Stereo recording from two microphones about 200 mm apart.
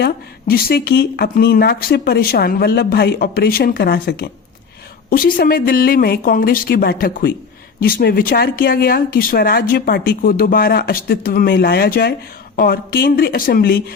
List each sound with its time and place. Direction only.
0.0 s speech: 50° left (ahead or behind)